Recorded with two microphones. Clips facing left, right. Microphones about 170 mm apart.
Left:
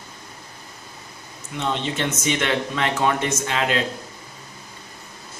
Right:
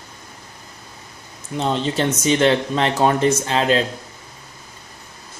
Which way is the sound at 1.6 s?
35° right (ahead or behind).